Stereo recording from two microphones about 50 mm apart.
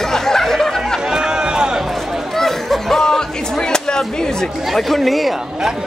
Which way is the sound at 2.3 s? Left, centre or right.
Centre.